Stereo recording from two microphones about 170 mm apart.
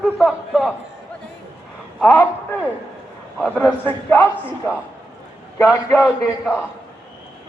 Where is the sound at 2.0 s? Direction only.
20° left (ahead or behind).